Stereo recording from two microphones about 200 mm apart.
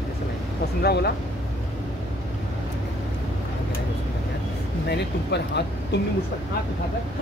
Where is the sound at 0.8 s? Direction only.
55° left (ahead or behind).